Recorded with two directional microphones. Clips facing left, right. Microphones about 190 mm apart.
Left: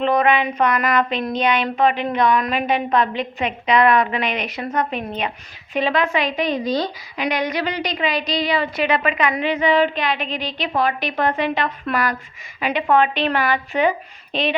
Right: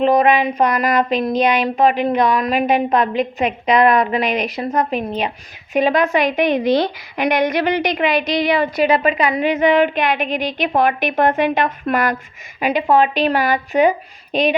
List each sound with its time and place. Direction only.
0.0 s a woman's voice: 40° right (ahead or behind)